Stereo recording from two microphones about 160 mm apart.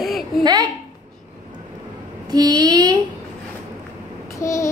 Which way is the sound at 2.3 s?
25° right (ahead or behind).